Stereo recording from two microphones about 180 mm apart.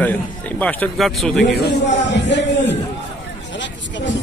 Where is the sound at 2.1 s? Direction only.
75° left (ahead or behind).